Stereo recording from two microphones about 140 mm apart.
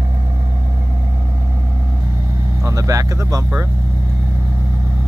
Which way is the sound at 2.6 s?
20° right (ahead or behind).